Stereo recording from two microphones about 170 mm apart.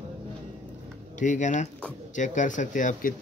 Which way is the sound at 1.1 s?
45° left (ahead or behind).